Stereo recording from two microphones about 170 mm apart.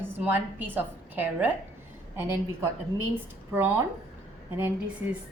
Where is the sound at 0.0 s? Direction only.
10° right (ahead or behind).